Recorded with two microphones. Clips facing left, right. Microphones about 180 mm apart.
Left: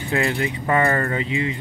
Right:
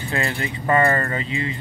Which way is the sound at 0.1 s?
15° left (ahead or behind).